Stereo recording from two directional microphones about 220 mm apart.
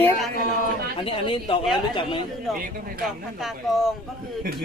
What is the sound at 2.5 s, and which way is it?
Speech, centre (ahead or behind).